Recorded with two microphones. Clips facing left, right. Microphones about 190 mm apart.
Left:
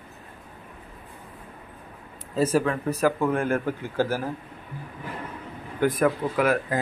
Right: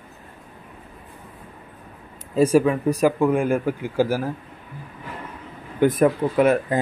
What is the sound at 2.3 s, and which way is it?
Speech, 15° right (ahead or behind).